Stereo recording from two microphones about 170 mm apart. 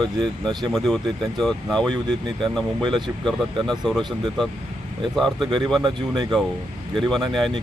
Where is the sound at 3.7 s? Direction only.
Centre (ahead or behind).